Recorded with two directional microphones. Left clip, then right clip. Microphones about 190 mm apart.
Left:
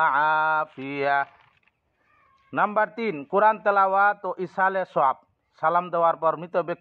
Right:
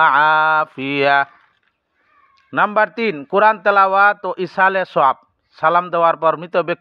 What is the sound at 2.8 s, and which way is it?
Speech, 25° right (ahead or behind).